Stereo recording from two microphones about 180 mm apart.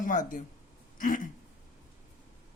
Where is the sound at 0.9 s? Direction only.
50° left (ahead or behind).